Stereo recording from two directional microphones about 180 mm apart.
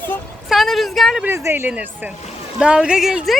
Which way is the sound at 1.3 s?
15° right (ahead or behind).